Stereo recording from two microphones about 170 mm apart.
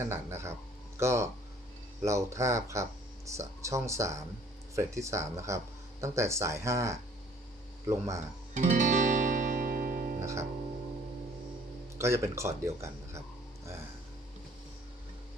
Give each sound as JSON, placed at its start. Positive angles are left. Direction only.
{"t": 0.0, "sound": "speech", "side_deg": -15}
{"t": 8.5, "sound": "music", "side_deg": -45}
{"t": 10.2, "sound": "music", "side_deg": -15}
{"t": 11.9, "sound": "speech", "side_deg": -15}